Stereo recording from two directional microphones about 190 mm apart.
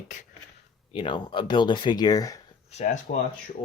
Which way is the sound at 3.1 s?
40° left (ahead or behind).